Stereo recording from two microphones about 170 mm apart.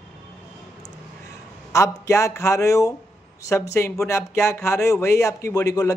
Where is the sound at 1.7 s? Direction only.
20° left (ahead or behind).